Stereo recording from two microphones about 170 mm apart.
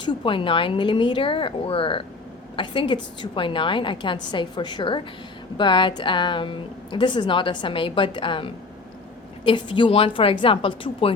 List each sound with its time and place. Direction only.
0.0 s a woman's voice: 30° left (ahead or behind)